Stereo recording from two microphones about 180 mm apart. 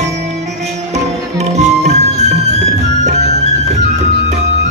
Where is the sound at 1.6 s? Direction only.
40° right (ahead or behind).